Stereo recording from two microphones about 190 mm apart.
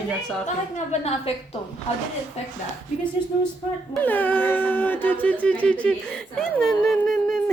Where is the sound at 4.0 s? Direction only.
10° left (ahead or behind).